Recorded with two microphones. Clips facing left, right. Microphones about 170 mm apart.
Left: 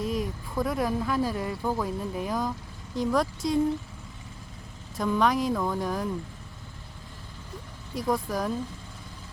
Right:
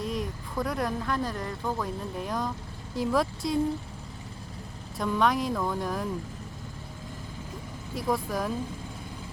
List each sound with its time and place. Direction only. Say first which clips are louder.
0.0 s speech: left 2 dB; centre (ahead or behind)
4.9 s speech: left 1 dB; centre (ahead or behind)
7.9 s speech: left 1 dB; centre (ahead or behind)